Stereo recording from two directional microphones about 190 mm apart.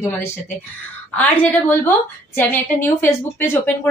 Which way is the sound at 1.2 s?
10° left (ahead or behind).